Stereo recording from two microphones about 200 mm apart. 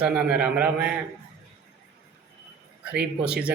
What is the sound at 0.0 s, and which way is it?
Speech, 5° right (ahead or behind).